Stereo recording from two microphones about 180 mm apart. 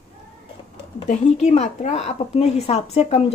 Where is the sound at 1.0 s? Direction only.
40° left (ahead or behind).